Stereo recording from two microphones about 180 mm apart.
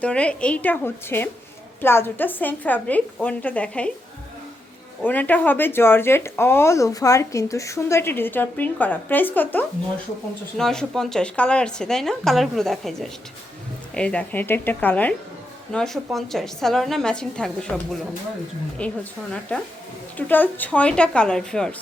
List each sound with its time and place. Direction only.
0.0 s speech: 5° left (ahead or behind)
5.0 s a woman's voice: 10° left (ahead or behind)